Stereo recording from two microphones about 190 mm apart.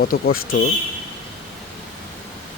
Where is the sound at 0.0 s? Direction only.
50° left (ahead or behind).